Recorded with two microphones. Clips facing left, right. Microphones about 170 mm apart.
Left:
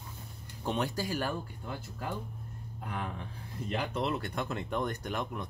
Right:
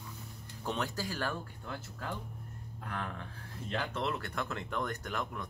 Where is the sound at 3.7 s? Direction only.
15° left (ahead or behind).